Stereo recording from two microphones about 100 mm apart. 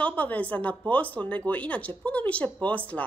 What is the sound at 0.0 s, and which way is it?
Speech, 15° left (ahead or behind).